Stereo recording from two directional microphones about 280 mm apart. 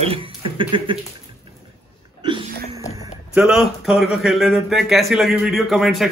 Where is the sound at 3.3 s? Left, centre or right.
Centre.